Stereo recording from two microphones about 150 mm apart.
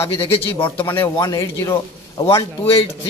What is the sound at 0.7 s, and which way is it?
A man's voice, 15° left (ahead or behind).